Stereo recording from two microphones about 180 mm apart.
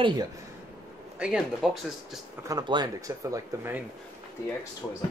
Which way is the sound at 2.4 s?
25° right (ahead or behind).